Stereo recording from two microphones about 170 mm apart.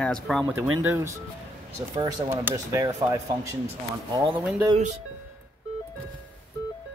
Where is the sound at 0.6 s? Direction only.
10° right (ahead or behind).